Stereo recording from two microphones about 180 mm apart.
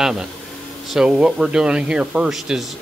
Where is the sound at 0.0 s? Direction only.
5° right (ahead or behind).